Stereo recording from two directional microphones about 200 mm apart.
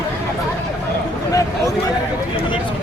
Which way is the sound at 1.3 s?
15° left (ahead or behind).